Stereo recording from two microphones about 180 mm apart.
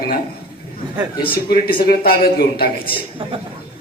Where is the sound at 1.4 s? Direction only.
60° left (ahead or behind).